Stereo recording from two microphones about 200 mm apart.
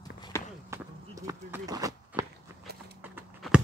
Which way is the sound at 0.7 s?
15° right (ahead or behind).